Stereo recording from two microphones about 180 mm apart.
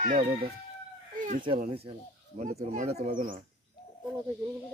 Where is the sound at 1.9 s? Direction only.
40° right (ahead or behind).